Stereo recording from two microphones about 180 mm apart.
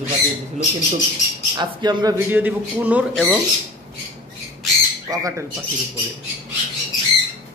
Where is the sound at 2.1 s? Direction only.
10° right (ahead or behind).